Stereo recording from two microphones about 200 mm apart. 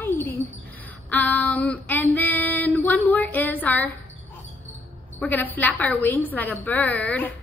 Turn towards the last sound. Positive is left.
turn(degrees=10)  # may be behind; listen again after turning